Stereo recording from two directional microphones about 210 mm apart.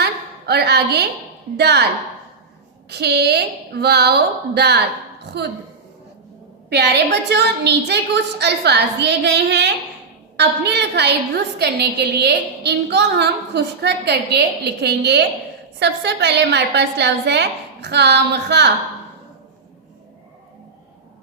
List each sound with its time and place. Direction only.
0.0 s a sound: 50° right (ahead or behind)
1.5 s a woman's voice: 50° right (ahead or behind)
2.9 s a woman's voice: 50° right (ahead or behind)
6.7 s a woman's voice: 55° right (ahead or behind)